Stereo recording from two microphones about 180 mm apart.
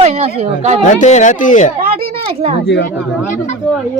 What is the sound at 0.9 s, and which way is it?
Speech, 40° left (ahead or behind).